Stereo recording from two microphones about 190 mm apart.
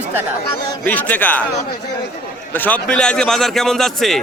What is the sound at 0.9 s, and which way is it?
Speech, 10° left (ahead or behind).